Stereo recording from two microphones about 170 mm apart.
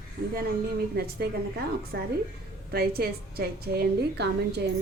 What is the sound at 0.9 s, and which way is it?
A woman's voice, 70° right (ahead or behind).